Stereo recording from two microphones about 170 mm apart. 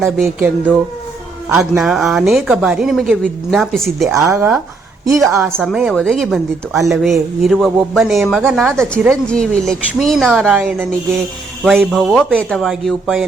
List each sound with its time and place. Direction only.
0.3 s speech: 10° right (ahead or behind)
1.8 s speech: centre (ahead or behind)
4.0 s speech: 15° right (ahead or behind)
5.5 s speech: 5° left (ahead or behind)
11.6 s speech: centre (ahead or behind)